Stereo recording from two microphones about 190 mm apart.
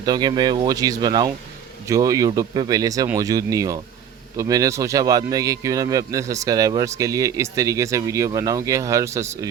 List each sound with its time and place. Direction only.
0.0 s speech: 20° right (ahead or behind)